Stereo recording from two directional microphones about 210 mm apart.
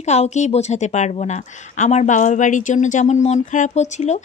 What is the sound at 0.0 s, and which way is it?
Speech, 30° left (ahead or behind).